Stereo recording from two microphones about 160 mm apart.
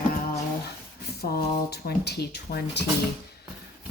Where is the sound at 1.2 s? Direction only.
75° left (ahead or behind); by 2.8 s 90° left.